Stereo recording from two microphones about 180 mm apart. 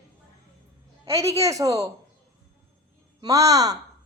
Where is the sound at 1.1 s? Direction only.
15° right (ahead or behind).